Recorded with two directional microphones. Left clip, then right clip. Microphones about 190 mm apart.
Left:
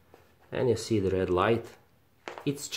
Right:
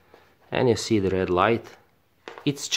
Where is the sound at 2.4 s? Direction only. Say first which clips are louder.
Right 6 dB; 35° right (ahead or behind).